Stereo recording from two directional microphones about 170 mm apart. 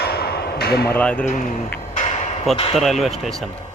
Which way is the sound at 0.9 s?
10° left (ahead or behind).